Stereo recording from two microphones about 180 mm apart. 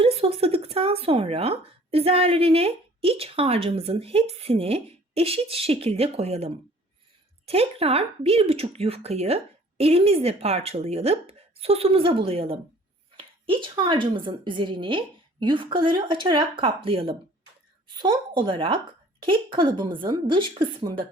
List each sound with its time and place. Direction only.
0.0 s a woman's voice: 35° right (ahead or behind)